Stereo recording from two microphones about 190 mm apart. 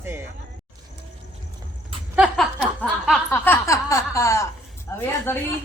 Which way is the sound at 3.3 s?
10° left (ahead or behind).